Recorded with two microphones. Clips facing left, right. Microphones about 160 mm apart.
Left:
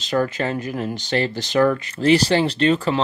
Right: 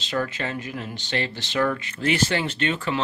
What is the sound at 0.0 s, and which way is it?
Speech, 40° left (ahead or behind).